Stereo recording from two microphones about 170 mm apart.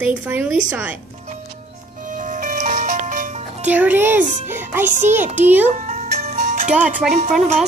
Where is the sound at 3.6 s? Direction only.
10° right (ahead or behind).